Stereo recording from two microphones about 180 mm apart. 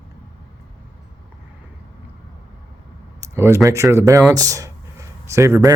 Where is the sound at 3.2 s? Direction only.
15° right (ahead or behind).